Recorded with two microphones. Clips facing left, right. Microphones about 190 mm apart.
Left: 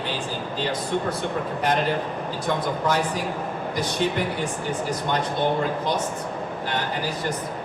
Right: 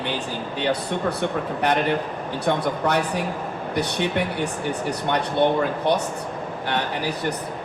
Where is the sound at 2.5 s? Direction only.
60° right (ahead or behind).